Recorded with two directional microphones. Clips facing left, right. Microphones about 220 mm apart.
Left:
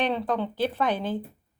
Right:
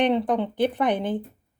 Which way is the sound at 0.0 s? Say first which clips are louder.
Right 5 dB; 15° right (ahead or behind).